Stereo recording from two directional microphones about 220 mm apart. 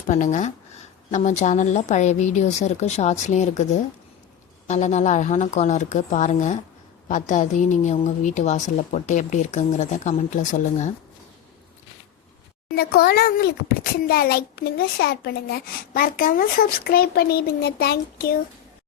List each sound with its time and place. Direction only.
0.1 s a woman's voice: 35° left (ahead or behind)
12.7 s a child's voice: 45° left (ahead or behind)